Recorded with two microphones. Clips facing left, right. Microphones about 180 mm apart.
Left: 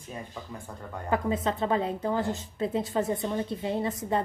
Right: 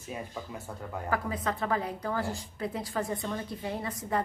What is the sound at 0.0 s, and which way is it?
Speech, 10° right (ahead or behind).